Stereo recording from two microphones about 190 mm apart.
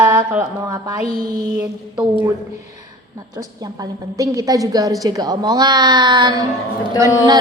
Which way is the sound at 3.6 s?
20° right (ahead or behind).